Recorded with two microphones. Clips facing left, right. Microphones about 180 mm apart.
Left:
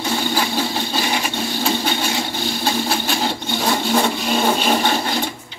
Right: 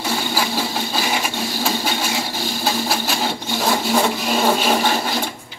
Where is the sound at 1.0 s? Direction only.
5° right (ahead or behind).